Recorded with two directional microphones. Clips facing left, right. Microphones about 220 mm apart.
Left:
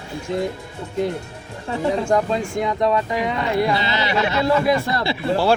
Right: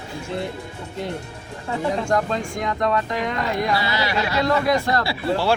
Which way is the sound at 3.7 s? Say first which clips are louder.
Left 1 dB; 20° left (ahead or behind).